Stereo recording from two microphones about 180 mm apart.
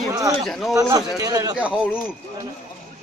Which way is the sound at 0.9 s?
20° right (ahead or behind).